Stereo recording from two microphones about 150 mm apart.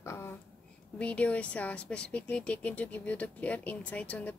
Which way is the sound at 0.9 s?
10° left (ahead or behind).